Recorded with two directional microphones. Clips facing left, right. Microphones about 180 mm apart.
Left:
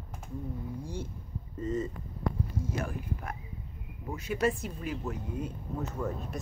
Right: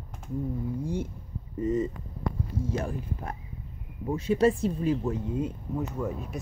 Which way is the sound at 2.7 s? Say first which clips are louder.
Right 3 dB; 30° right (ahead or behind).